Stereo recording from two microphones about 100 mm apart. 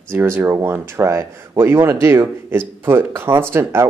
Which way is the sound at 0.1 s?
25° right (ahead or behind).